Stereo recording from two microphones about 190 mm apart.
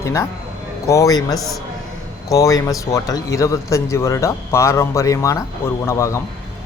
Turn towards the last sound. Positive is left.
turn(degrees=15)  # may be behind; listen again after turning